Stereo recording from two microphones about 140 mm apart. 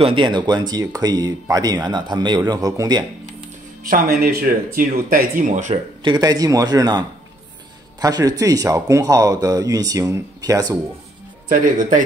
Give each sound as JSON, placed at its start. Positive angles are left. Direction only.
{"t": 0.0, "sound": "speech", "side_deg": -35}
{"t": 3.8, "sound": "speech", "side_deg": -85}
{"t": 5.4, "sound": "speech", "side_deg": -60}
{"t": 6.0, "sound": "speech", "side_deg": -30}
{"t": 11.5, "sound": "speech", "side_deg": -65}